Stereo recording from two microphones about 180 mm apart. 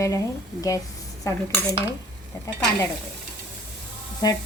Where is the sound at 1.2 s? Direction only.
20° left (ahead or behind).